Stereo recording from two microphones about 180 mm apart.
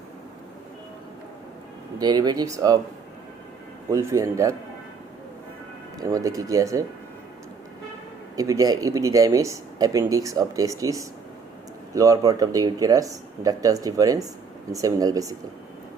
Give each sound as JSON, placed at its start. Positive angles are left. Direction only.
{"t": 2.0, "sound": "speech", "side_deg": -20}
{"t": 3.8, "sound": "speech", "side_deg": -15}
{"t": 6.0, "sound": "speech", "side_deg": -20}
{"t": 8.4, "sound": "speech", "side_deg": -20}